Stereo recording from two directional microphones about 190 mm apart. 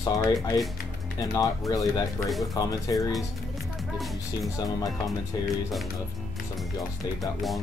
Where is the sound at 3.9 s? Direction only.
Centre (ahead or behind).